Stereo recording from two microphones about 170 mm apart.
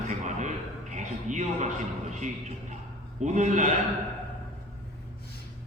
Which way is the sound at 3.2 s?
45° right (ahead or behind).